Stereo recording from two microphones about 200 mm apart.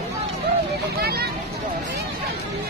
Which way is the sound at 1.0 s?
50° right (ahead or behind).